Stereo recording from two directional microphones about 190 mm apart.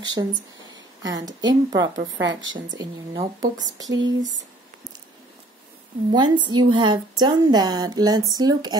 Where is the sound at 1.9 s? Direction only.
80° right.